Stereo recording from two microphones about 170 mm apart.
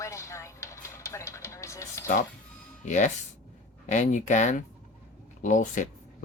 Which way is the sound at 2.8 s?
45° left (ahead or behind).